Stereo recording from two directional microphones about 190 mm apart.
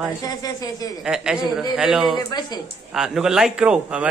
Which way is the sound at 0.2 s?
20° left (ahead or behind).